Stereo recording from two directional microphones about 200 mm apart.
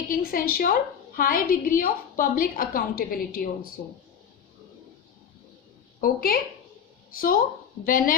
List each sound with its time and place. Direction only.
0.1 s a woman's voice: 45° left (ahead or behind)
6.0 s a woman's voice: 50° left (ahead or behind)